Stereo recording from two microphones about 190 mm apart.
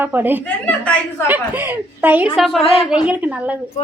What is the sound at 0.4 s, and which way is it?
Speech, 10° left (ahead or behind).